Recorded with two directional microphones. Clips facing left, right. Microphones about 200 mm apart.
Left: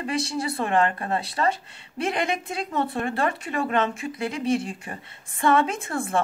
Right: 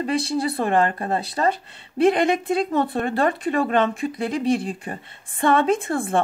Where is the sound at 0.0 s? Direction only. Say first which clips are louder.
Right 5 dB; 30° right (ahead or behind).